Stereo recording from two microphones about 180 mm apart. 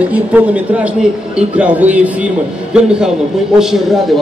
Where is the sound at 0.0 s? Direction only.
10° right (ahead or behind).